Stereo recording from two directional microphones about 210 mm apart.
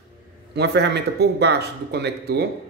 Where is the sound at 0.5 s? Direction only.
50° right (ahead or behind).